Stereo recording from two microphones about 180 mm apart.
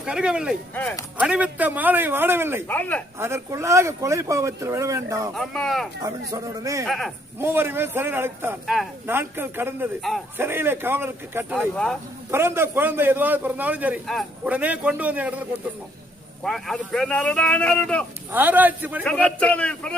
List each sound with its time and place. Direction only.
0.0 s a man's voice: 5° right (ahead or behind)
2.6 s a man's voice: 10° left (ahead or behind)
3.2 s a man's voice: 15° right (ahead or behind)
5.3 s a man's voice: centre (ahead or behind)
6.0 s speech: 20° right (ahead or behind)
6.8 s a man's voice: centre (ahead or behind)
7.3 s a man's voice: 10° right (ahead or behind)
8.6 s a man's voice: centre (ahead or behind)
9.0 s a man's voice: 10° right (ahead or behind)
11.7 s a man's voice: 5° left (ahead or behind)
12.3 s a man's voice: 15° right (ahead or behind); by 18.0 s 5° left (ahead or behind)
18.3 s a man's voice: 10° right (ahead or behind)
19.0 s a man's voice: 5° left (ahead or behind)